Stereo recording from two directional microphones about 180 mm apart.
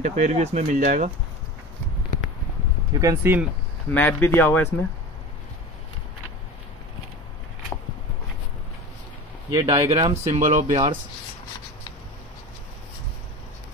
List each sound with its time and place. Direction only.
0.0 s speech: 40° right (ahead or behind)
2.9 s speech: 15° right (ahead or behind)
3.9 s speech: 10° left (ahead or behind)
9.5 s speech: 20° right (ahead or behind)
10.2 s speech: 40° right (ahead or behind)